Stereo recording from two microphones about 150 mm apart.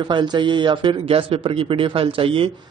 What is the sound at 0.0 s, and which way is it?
A man's voice, 30° right (ahead or behind).